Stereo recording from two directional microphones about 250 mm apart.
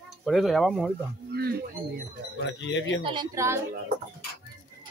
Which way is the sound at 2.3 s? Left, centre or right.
Left.